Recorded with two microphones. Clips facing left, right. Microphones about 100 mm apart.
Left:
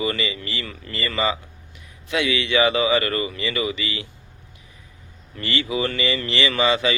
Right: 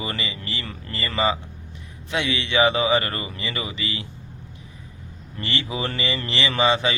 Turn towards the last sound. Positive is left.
turn(degrees=-30)  # may be behind; listen again after turning